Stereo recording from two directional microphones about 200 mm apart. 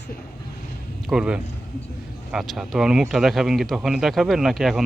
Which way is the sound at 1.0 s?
5° right (ahead or behind).